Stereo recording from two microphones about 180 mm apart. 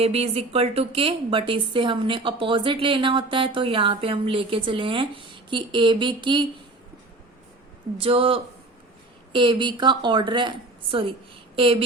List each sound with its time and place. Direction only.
0.0 s a woman's voice: 35° right (ahead or behind)
7.9 s a woman's voice: 30° right (ahead or behind)
11.5 s a sound: 30° right (ahead or behind)